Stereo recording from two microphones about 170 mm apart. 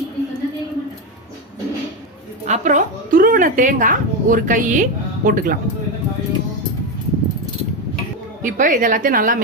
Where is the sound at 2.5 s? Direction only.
45° right (ahead or behind).